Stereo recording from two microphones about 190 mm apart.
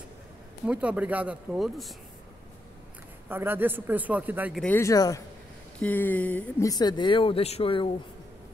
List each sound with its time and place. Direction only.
0.7 s speech: 5° right (ahead or behind)
3.3 s speech: 10° right (ahead or behind)
4.6 s speech: 10° left (ahead or behind)
6.7 s speech: 20° left (ahead or behind)